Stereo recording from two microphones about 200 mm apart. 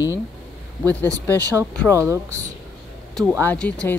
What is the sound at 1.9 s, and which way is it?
Speech, 15° right (ahead or behind).